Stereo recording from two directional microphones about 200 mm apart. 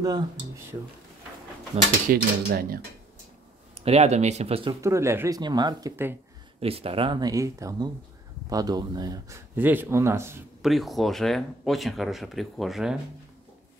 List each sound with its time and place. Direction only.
2.0 s speech: 50° right (ahead or behind)
3.7 s speech: 30° right (ahead or behind)
4.8 s speech: 15° right (ahead or behind)
6.6 s speech: 30° right (ahead or behind); by 10.4 s 10° right (ahead or behind)
10.6 s speech: centre (ahead or behind)